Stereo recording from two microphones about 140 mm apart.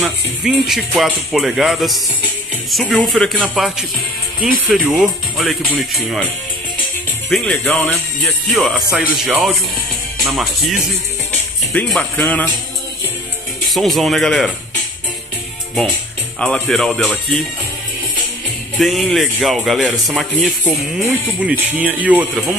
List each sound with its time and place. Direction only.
0.0 s speech: 5° right (ahead or behind)
4.8 s speech: 10° right (ahead or behind)
5.4 s speech: centre (ahead or behind)
7.2 s speech: centre (ahead or behind)
13.7 s speech: centre (ahead or behind)
16.3 s speech: 5° left (ahead or behind)
18.8 s speech: centre (ahead or behind)
20.6 s speech: 15° right (ahead or behind)